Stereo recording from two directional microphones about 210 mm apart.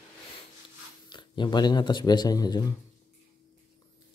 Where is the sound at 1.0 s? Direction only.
20° left (ahead or behind).